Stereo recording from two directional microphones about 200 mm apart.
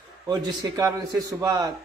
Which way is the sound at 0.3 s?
20° right (ahead or behind).